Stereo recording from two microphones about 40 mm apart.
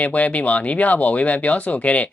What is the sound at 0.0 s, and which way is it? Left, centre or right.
Speech, left.